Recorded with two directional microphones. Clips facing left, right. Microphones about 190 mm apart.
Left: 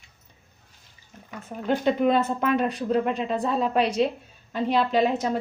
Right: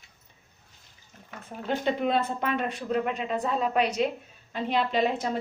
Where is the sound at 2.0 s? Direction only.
50° left (ahead or behind); by 4.1 s 30° left (ahead or behind).